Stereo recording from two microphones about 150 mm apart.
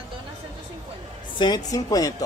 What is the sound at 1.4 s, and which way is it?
Speech, 25° left (ahead or behind).